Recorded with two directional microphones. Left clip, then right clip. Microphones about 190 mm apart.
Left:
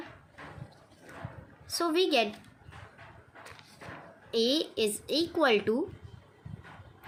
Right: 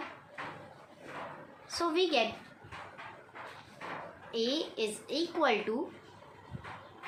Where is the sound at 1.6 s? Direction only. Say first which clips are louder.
Left 3 dB; 45° left (ahead or behind).